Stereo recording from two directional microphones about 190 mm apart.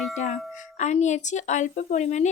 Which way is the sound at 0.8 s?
40° left (ahead or behind).